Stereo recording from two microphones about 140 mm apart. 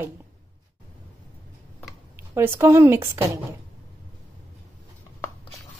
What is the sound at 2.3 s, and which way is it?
Speech, 15° right (ahead or behind).